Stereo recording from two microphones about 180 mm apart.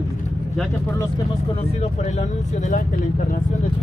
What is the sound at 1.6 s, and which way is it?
Speech, 35° left (ahead or behind).